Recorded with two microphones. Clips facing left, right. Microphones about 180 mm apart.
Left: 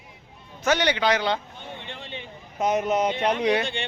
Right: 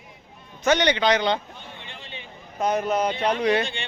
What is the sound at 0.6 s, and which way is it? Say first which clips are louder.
Speech: right 2 dB; 5° left (ahead or behind).